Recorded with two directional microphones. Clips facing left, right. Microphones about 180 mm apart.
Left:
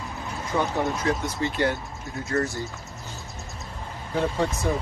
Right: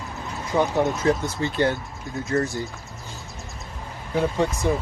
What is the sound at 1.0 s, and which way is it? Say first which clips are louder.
Speech: right 3 dB; 30° right (ahead or behind).